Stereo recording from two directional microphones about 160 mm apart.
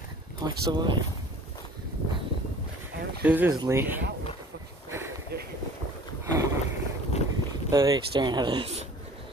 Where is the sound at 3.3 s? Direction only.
10° right (ahead or behind).